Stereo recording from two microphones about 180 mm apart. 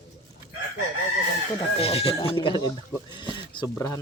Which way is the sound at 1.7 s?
35° left (ahead or behind).